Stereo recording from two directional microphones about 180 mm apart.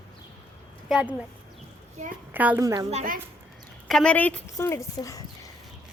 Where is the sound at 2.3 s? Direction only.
10° right (ahead or behind).